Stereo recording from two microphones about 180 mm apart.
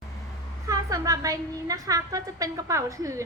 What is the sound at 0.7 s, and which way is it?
A woman's voice, 20° right (ahead or behind).